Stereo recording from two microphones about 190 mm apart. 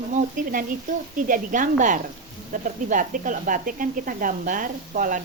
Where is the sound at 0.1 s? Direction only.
45° right (ahead or behind).